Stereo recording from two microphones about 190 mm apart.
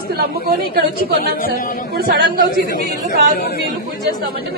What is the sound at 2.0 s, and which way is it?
Speech, 50° right (ahead or behind).